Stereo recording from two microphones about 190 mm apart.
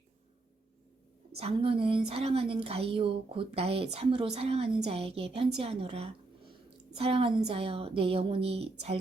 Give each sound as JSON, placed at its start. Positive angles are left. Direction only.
{"t": 1.4, "sound": "a woman's voice", "side_deg": -30}